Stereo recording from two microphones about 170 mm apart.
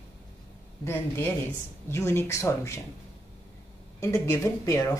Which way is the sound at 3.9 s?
15° left (ahead or behind).